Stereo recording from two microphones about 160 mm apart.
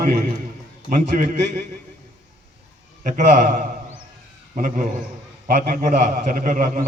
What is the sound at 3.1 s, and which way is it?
Speech, 60° right (ahead or behind).